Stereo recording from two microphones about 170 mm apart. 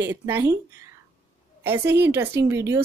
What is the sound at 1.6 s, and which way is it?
Speech, 15° right (ahead or behind).